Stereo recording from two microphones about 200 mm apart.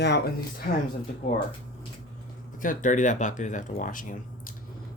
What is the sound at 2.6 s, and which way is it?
Speech, 40° left (ahead or behind).